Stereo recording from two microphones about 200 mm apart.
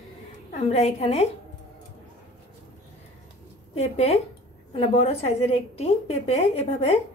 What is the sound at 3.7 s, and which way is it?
A woman's voice, 30° left (ahead or behind).